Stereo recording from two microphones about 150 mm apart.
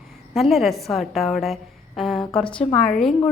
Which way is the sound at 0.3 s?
Centre (ahead or behind).